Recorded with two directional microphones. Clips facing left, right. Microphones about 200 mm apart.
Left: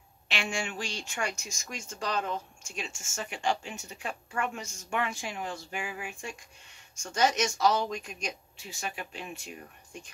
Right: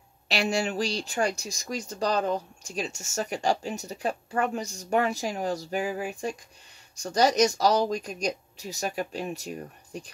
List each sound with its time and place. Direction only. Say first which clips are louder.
0.3 s speech: right 7 dB; 40° right (ahead or behind)